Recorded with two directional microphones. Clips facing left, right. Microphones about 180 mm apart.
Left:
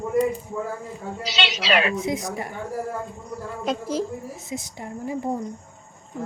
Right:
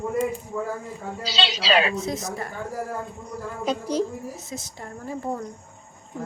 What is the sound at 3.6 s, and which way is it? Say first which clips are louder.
Speech: right 1 dB; centre (ahead or behind).